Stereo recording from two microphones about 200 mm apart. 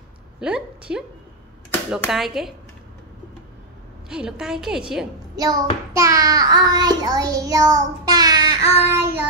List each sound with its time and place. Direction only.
0.4 s a woman's voice: 5° right (ahead or behind)
4.1 s a woman's voice: 5° right (ahead or behind)
5.3 s child singing: 20° right (ahead or behind)